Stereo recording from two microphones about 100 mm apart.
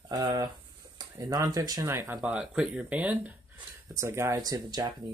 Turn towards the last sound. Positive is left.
turn(degrees=-45)  # may be behind; listen again after turning